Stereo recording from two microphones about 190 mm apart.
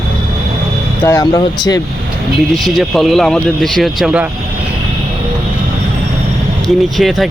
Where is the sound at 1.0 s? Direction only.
20° left (ahead or behind).